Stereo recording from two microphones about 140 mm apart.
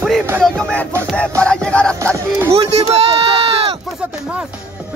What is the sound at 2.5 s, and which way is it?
Speech, 45° right (ahead or behind).